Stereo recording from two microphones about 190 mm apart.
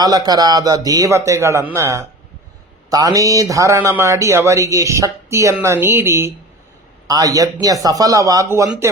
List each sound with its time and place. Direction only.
0.0 s a man's voice: 20° right (ahead or behind)